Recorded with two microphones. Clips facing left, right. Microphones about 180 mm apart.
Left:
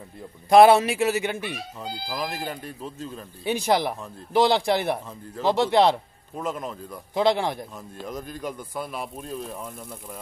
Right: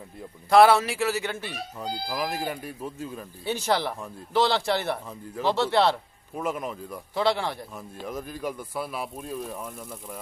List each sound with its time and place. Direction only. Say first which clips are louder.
0.5 s a man's voice: left 3 dB; 20° left (ahead or behind)
2.0 s speech: right 1 dB; 10° right (ahead or behind)
3.4 s a man's voice: left 3 dB; 15° left (ahead or behind)
6.3 s speech: even; 10° right (ahead or behind)
7.2 s a man's voice: left 3 dB; 15° left (ahead or behind)
7.7 s speech: even; 5° right (ahead or behind)